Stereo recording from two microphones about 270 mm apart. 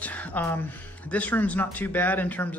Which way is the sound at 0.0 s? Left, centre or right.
Centre.